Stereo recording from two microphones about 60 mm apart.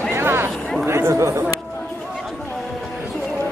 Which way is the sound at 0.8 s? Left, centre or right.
Right.